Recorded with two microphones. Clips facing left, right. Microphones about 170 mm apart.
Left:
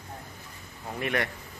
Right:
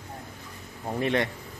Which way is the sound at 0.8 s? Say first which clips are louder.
Right 4 dB; 25° right (ahead or behind).